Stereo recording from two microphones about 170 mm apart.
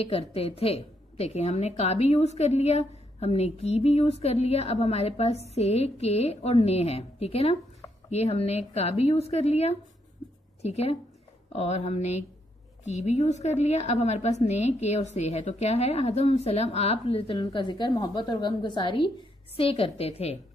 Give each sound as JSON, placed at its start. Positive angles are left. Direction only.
{"t": 0.0, "sound": "a woman's voice", "side_deg": 35}